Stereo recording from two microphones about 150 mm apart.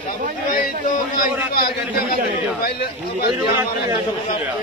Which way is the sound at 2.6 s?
90° left.